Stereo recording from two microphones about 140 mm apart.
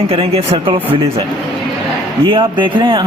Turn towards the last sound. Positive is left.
turn(degrees=-35)  # may be behind; listen again after turning